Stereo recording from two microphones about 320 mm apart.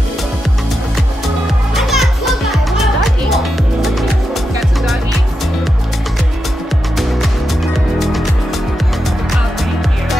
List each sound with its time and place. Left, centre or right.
1.8 s music: centre
7.0 s music: centre